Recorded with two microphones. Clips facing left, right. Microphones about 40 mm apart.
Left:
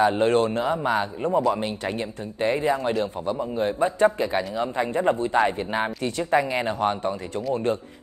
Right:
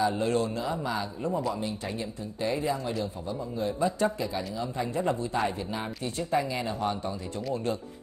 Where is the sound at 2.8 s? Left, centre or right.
Left.